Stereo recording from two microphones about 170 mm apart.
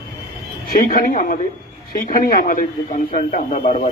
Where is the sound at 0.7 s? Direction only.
55° left (ahead or behind).